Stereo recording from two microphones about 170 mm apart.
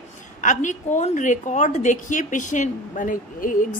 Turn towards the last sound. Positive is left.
turn(degrees=55)  # may be behind; listen again after turning